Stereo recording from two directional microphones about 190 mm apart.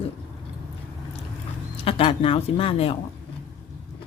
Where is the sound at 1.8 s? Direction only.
30° left (ahead or behind).